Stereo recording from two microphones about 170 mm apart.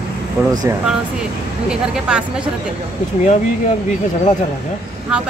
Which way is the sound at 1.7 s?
5° right (ahead or behind).